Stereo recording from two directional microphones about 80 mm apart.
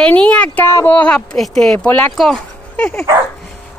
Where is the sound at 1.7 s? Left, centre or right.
Centre.